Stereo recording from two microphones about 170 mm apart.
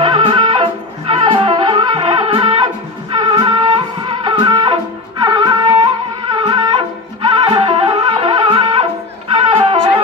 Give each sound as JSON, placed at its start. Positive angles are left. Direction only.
{"t": 0.0, "sound": "music", "side_deg": -30}